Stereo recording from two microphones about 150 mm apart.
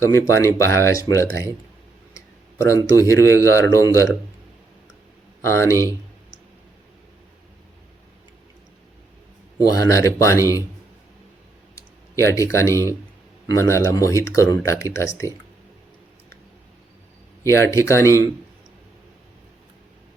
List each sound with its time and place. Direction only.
0.0 s speech: 20° left (ahead or behind)
5.4 s speech: 20° left (ahead or behind)
9.6 s speech: 20° left (ahead or behind)
11.7 s speech: 20° left (ahead or behind)
17.4 s speech: 20° left (ahead or behind)